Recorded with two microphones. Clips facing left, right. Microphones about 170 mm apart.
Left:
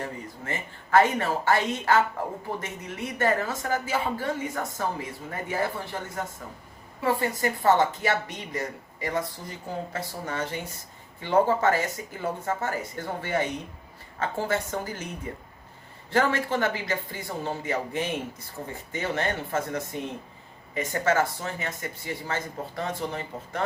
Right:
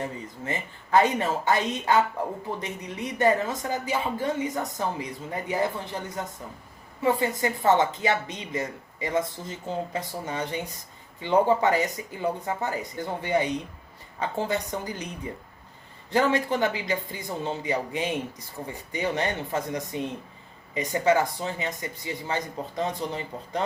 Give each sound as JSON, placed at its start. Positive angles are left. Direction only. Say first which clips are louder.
{"t": 0.0, "sound": "a woman's voice", "louder": "right 2 dB", "side_deg": -20}
{"t": 16.1, "sound": "a man's voice", "louder": "right 1 dB", "side_deg": -15}